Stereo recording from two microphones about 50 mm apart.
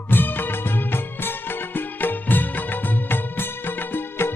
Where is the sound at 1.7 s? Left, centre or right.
Left.